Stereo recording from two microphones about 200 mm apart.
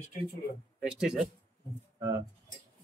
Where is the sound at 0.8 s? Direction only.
5° right (ahead or behind).